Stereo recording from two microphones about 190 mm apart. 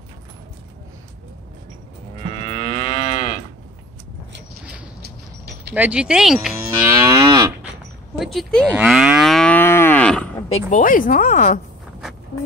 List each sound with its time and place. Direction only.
2.3 s moo: 30° left (ahead or behind)
5.8 s speech: 5° right (ahead or behind)
6.5 s livestock: 15° right (ahead or behind)
8.2 s speech: centre (ahead or behind)
8.6 s livestock: 5° right (ahead or behind)
10.5 s speech: 45° left (ahead or behind)